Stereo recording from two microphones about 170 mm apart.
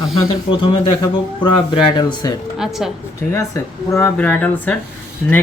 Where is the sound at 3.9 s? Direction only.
15° left (ahead or behind).